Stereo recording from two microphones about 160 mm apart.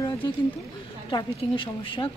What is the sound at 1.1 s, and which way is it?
Speech, 35° left (ahead or behind).